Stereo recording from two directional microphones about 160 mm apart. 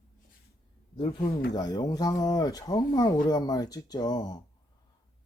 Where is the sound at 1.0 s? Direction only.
30° left (ahead or behind).